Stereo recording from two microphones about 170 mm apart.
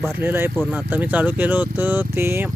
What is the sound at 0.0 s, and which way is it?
Speech, 15° right (ahead or behind).